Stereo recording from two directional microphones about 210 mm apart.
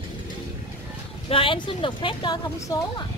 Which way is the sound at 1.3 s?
25° left (ahead or behind).